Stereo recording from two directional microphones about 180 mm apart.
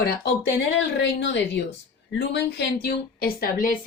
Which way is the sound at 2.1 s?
65° left (ahead or behind).